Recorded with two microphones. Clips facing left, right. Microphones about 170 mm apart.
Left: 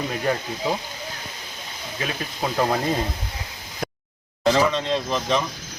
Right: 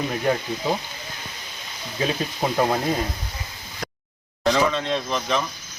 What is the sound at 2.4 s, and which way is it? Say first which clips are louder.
Speech: right 1 dB; 10° right (ahead or behind).